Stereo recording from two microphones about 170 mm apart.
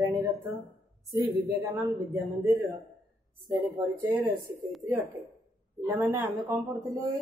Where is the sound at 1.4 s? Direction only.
15° right (ahead or behind).